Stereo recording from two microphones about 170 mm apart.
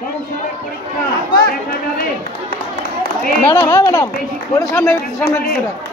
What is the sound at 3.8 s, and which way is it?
Speech, 25° left (ahead or behind).